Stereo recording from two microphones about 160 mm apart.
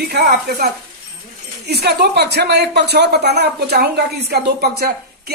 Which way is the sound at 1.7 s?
90° right.